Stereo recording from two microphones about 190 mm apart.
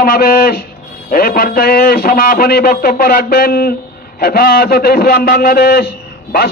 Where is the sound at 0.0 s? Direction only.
55° left (ahead or behind).